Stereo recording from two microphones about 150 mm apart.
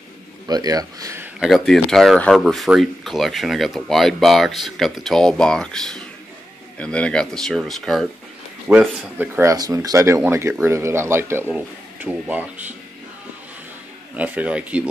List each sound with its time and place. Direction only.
0.5 s speech: 25° right (ahead or behind)
1.2 s speech: centre (ahead or behind)
8.6 s speech: 10° right (ahead or behind)
14.1 s speech: 10° right (ahead or behind)